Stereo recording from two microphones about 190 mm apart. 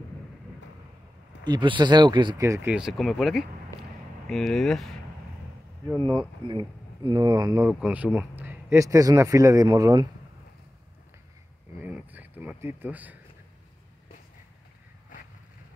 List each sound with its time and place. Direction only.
1.4 s speech: 25° right (ahead or behind); by 4.9 s centre (ahead or behind)
6.0 s speech: 25° right (ahead or behind)
7.6 s speech: 10° right (ahead or behind)
11.8 s a sound: 10° right (ahead or behind)